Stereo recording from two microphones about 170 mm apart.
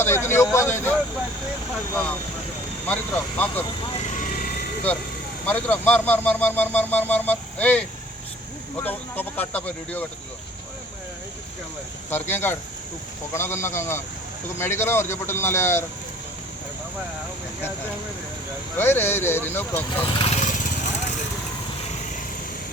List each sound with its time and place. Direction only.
0.0 s speech: 15° left (ahead or behind)
2.8 s speech: 10° left (ahead or behind)
4.1 s vehicle: 50° left (ahead or behind)
5.5 s speech: 10° left (ahead or behind)
12.1 s speech: 10° left (ahead or behind)
18.8 s speech: 15° left (ahead or behind)
20.0 s vehicle: 35° left (ahead or behind)